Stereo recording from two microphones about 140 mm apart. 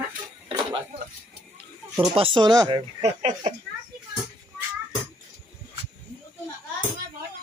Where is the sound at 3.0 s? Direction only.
45° right (ahead or behind).